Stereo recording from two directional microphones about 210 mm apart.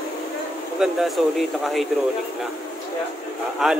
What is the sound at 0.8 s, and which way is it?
Speech, centre (ahead or behind).